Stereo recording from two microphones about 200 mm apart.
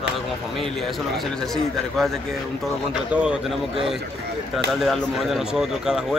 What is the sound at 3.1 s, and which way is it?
Speech, 5° right (ahead or behind).